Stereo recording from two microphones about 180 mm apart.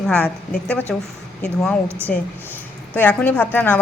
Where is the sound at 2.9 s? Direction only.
10° left (ahead or behind).